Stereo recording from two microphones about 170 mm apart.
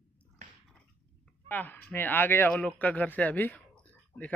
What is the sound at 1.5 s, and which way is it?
Speech, 10° left (ahead or behind).